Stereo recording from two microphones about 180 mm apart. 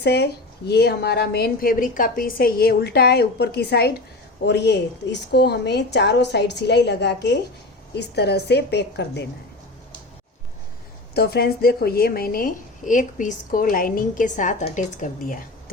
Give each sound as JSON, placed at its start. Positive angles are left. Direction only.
{"t": 0.0, "sound": "a woman's voice", "side_deg": 65}
{"t": 11.1, "sound": "a woman's voice", "side_deg": 60}